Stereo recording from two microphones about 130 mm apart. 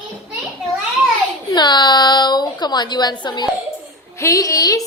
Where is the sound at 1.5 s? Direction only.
35° left (ahead or behind).